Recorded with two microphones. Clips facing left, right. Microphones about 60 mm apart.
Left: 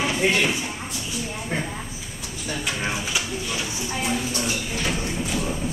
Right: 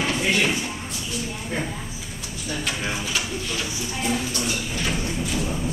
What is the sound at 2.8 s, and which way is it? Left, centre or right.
Speech, centre.